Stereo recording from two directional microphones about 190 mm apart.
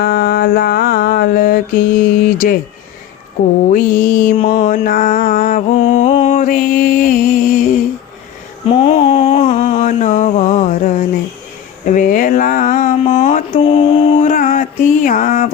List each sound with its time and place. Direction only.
0.0 s mantra: 55° left (ahead or behind)
3.7 s mantra: 45° left (ahead or behind)
8.6 s mantra: 30° left (ahead or behind)
11.9 s a sound: 45° left (ahead or behind)